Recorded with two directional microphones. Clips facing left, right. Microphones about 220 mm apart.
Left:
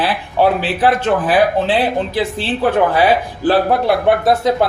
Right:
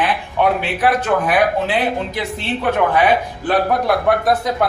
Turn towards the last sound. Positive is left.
turn(degrees=25)  # may be behind; listen again after turning